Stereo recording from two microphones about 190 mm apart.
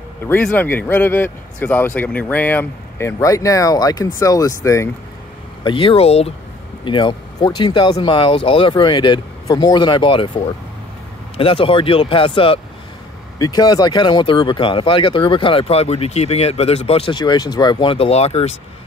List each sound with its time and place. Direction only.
0.3 s speech: 5° left (ahead or behind); by 18.6 s 35° left (ahead or behind)